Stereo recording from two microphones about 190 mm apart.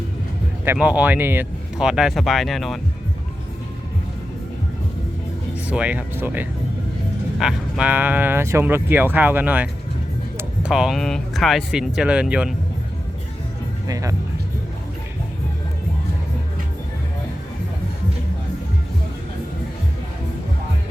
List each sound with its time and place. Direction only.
0.6 s speech: 10° right (ahead or behind)
5.6 s speech: 5° right (ahead or behind)
13.8 s speech: 20° right (ahead or behind)